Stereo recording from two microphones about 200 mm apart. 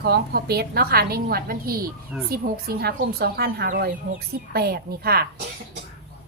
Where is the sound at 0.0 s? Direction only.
50° right (ahead or behind).